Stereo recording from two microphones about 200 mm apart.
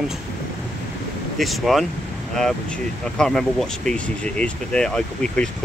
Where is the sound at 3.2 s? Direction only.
5° left (ahead or behind).